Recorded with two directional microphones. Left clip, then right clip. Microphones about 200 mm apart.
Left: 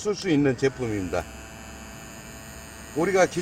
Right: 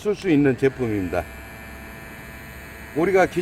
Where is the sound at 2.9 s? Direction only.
20° right (ahead or behind).